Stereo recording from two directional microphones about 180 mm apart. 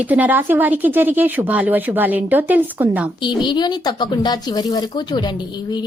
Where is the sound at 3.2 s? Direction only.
25° left (ahead or behind).